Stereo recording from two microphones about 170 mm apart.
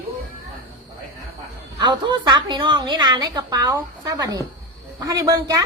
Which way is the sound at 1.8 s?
25° right (ahead or behind).